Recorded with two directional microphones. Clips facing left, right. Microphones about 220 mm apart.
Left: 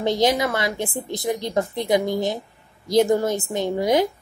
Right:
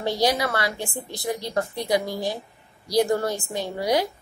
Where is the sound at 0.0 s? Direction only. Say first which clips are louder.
Left 3 dB; 20° left (ahead or behind).